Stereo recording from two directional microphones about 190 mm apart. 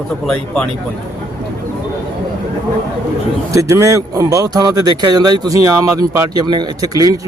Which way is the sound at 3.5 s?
15° right (ahead or behind).